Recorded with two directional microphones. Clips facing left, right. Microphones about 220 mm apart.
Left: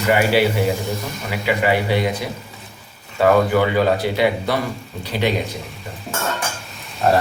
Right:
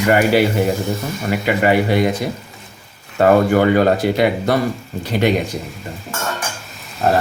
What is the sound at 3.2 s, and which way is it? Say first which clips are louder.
Speech: right 3 dB; 50° right (ahead or behind).